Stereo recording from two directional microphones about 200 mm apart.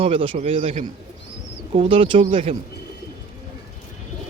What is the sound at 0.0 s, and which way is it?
Speech, 25° right (ahead or behind).